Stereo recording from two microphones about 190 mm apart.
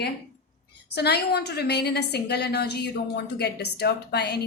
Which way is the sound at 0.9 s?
60° left (ahead or behind).